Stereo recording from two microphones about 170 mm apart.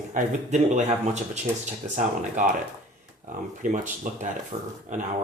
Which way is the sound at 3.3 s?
50° right (ahead or behind).